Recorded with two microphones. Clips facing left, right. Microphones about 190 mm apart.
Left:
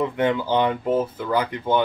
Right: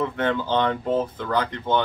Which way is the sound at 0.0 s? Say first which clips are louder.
Left 2 dB; 15° left (ahead or behind).